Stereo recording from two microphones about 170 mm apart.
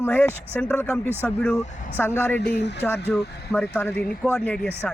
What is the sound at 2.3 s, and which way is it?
Speech, 80° left.